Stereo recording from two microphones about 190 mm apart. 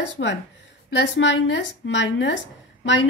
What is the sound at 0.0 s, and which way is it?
A woman's voice, 65° left (ahead or behind).